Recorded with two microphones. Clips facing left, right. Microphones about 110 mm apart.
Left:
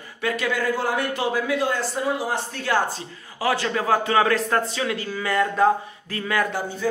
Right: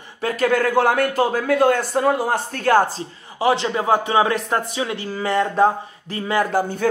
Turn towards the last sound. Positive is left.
turn(degrees=-50)  # may be behind; listen again after turning